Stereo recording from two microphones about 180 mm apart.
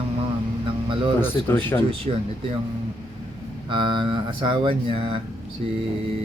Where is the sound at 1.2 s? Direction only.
10° left (ahead or behind).